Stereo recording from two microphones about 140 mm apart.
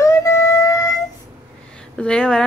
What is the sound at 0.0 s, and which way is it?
Wind instrument, 20° left (ahead or behind).